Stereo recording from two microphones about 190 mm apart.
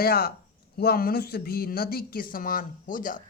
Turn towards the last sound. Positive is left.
turn(degrees=45)  # may be behind; listen again after turning